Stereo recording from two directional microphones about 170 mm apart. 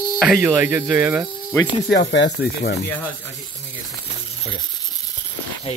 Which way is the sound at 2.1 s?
90° left.